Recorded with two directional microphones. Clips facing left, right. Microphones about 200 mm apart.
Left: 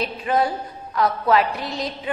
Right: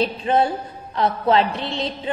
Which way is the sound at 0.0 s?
30° right (ahead or behind).